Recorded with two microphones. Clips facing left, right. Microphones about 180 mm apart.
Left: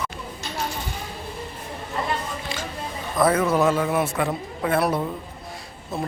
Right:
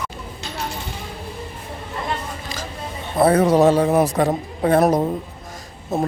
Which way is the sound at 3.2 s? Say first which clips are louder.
Right 5 dB; 30° right (ahead or behind).